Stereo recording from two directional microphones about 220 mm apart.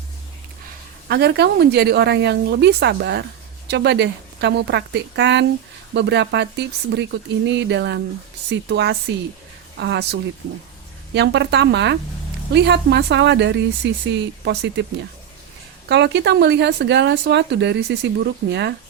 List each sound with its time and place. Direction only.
1.0 s speech: 50° right (ahead or behind)
15.9 s speech: 50° right (ahead or behind)